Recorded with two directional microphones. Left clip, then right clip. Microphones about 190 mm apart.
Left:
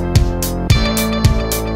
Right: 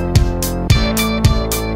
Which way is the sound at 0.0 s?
Centre (ahead or behind).